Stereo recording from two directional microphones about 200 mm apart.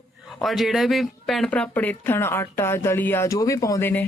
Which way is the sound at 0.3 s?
Centre (ahead or behind).